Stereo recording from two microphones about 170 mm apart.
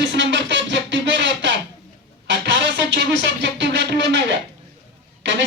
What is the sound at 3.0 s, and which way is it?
Music, 90° right.